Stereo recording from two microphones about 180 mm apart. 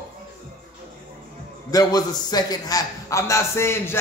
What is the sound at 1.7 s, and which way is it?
A man's voice, 20° left (ahead or behind).